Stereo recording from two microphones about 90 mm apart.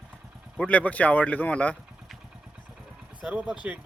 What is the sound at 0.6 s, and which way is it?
Speech, 15° left (ahead or behind).